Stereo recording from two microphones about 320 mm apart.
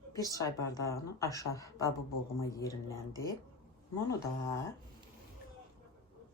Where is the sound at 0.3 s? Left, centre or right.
Centre.